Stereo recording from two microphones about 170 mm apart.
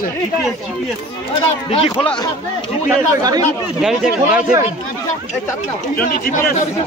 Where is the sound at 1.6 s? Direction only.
35° left (ahead or behind).